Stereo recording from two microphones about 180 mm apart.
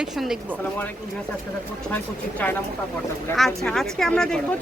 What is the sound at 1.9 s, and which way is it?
Speech, 10° left (ahead or behind).